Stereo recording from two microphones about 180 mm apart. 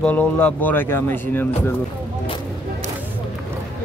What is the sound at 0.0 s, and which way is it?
Speech, 5° left (ahead or behind).